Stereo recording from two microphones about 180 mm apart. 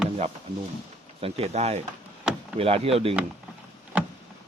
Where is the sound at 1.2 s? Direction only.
35° right (ahead or behind).